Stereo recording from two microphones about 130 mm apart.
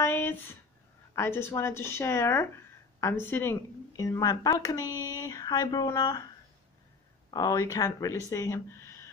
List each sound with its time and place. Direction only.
0.0 s a sound: 15° left (ahead or behind)
1.1 s speech: 20° left (ahead or behind)
7.2 s speech: 30° left (ahead or behind)